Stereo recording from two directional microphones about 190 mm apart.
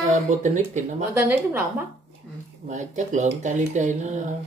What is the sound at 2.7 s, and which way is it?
Speech, 40° right (ahead or behind).